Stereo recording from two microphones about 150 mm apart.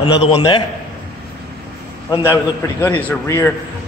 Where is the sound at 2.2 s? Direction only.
15° left (ahead or behind).